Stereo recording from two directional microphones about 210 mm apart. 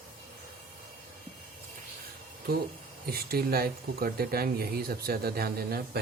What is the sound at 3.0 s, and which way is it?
Speech, 45° right (ahead or behind).